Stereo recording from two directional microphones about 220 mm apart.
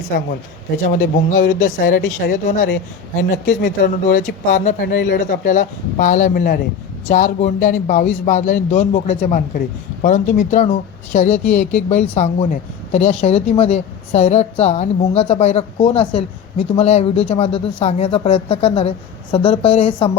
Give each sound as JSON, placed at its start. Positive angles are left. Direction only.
{"t": 0.9, "sound": "a man's voice", "side_deg": 35}
{"t": 3.8, "sound": "a man's voice", "side_deg": 35}